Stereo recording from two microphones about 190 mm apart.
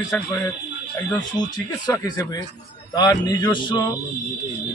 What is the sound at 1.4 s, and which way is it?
A man's voice, 20° left (ahead or behind).